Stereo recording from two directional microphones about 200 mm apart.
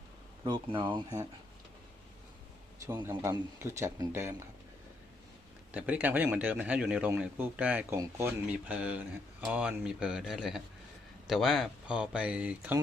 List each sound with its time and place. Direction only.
0.4 s speech: 25° right (ahead or behind)
2.8 s speech: 10° right (ahead or behind)
5.7 s speech: 10° right (ahead or behind)